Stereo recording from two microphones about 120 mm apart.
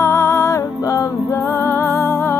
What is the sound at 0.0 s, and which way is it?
Music, 20° left (ahead or behind).